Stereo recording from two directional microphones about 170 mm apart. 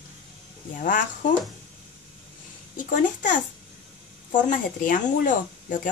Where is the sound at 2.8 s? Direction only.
50° left (ahead or behind).